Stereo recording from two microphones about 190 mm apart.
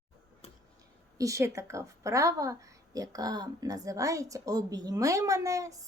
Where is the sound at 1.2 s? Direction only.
15° right (ahead or behind).